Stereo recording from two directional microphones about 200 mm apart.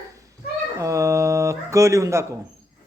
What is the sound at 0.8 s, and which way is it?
Speech, 15° right (ahead or behind).